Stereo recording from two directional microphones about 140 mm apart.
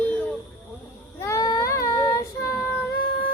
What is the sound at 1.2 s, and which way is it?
Child singing, 20° left (ahead or behind).